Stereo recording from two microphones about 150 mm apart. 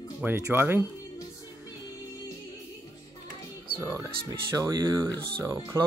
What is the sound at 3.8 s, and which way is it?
Speech, 25° right (ahead or behind).